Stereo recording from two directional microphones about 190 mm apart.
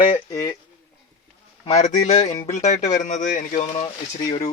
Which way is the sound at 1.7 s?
40° left (ahead or behind).